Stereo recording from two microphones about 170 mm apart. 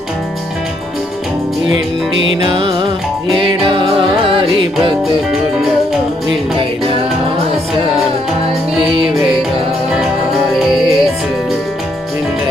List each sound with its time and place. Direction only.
1.7 s music: 90° right
2.5 s music: 30° right (ahead or behind)
5.3 s music: centre (ahead or behind)
10.5 s music: centre (ahead or behind)